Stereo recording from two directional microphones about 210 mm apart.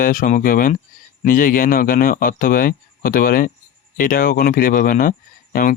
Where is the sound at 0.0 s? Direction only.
40° left (ahead or behind).